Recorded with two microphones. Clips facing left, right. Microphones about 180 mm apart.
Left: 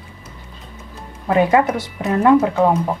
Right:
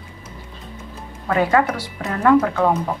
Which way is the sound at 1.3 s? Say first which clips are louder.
Left 3 dB; 20° left (ahead or behind).